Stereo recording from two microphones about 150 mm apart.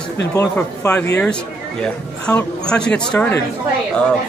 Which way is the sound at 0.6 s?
10° left (ahead or behind).